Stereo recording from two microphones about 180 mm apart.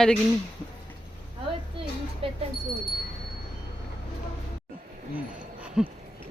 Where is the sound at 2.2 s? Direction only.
30° right (ahead or behind).